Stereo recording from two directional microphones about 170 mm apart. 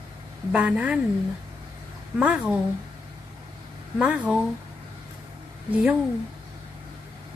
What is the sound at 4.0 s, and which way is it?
Speech, 5° right (ahead or behind).